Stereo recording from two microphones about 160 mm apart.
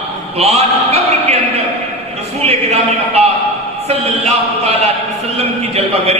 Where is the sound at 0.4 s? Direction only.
40° right (ahead or behind).